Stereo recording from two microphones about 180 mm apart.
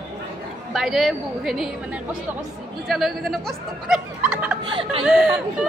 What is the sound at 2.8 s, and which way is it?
Speech, centre (ahead or behind).